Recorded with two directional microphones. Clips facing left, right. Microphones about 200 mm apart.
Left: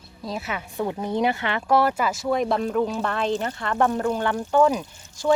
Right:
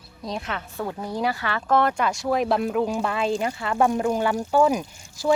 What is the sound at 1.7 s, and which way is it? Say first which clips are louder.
Speech: even; 5° left (ahead or behind).